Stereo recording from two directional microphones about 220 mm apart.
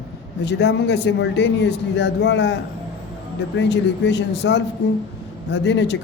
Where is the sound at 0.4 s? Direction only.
50° left (ahead or behind).